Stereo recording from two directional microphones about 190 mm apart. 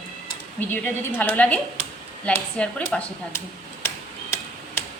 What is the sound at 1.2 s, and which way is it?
A woman's voice, 5° left (ahead or behind).